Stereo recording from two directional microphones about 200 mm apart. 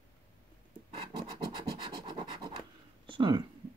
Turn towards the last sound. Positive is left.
turn(degrees=-25)  # may be behind; listen again after turning